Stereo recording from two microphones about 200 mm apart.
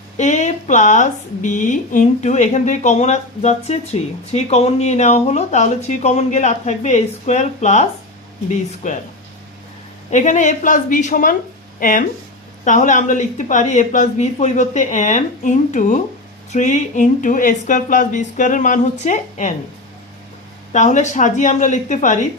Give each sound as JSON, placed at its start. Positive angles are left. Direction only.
{"t": 0.2, "sound": "speech", "side_deg": 35}
{"t": 10.1, "sound": "speech", "side_deg": 40}
{"t": 20.7, "sound": "speech", "side_deg": 35}